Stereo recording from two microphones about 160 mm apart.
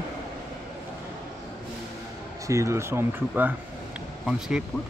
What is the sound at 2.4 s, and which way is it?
Speech, 20° right (ahead or behind).